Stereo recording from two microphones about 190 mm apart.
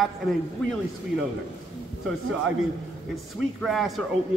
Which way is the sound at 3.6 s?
Centre (ahead or behind).